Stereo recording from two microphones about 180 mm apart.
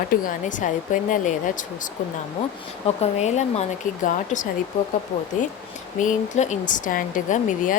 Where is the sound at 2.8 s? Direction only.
35° left (ahead or behind).